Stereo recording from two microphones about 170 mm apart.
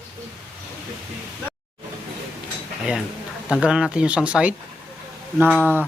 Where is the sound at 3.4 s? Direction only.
5° right (ahead or behind).